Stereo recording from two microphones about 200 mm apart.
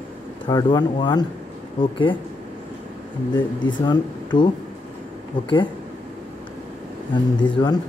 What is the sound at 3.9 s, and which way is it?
Speech, 25° left (ahead or behind).